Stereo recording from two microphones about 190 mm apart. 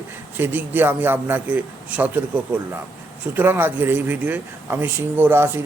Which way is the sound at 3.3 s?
10° right (ahead or behind).